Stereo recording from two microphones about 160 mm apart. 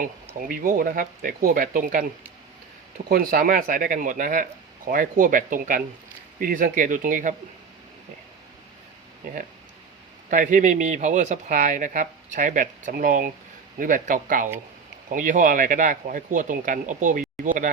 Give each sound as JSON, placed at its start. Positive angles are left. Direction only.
{"t": 0.4, "sound": "speech", "side_deg": -60}
{"t": 3.1, "sound": "speech", "side_deg": -70}
{"t": 9.2, "sound": "a man's voice", "side_deg": -55}